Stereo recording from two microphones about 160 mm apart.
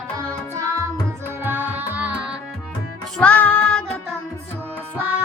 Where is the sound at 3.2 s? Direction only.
10° left (ahead or behind).